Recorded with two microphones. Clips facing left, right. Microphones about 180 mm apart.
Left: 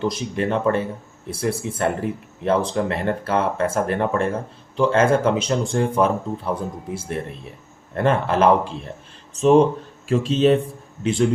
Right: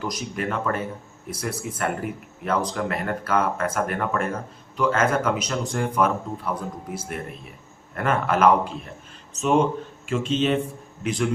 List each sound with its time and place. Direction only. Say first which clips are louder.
0.0 s speech: left 5 dB; 25° left (ahead or behind)